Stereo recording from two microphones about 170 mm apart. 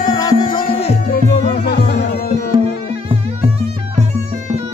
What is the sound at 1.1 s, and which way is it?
Music, 65° left (ahead or behind).